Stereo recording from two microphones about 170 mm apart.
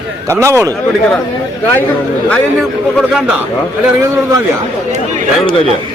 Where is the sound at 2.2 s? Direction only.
5° left (ahead or behind).